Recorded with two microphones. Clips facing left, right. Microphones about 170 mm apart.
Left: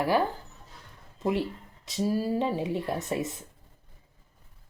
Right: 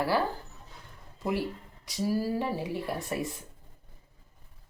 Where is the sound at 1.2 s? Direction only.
20° left (ahead or behind).